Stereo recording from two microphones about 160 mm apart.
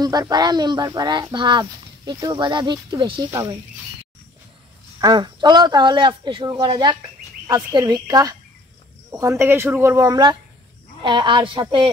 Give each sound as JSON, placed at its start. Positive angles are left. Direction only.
{"t": 0.0, "sound": "speech", "side_deg": -25}
{"t": 5.0, "sound": "speech", "side_deg": -25}